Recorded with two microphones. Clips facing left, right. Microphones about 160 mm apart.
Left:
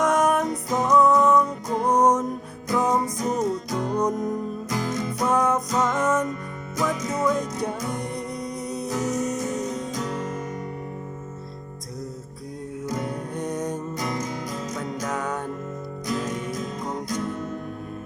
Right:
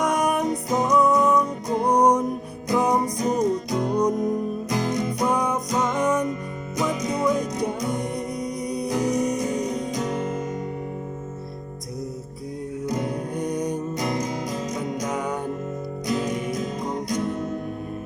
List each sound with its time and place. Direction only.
0.0 s music: 15° right (ahead or behind)
12.8 s music: 20° right (ahead or behind)